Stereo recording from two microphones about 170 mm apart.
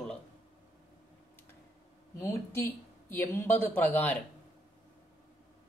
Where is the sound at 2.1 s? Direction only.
15° left (ahead or behind).